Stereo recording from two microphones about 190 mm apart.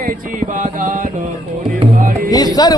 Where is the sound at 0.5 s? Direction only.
45° right (ahead or behind).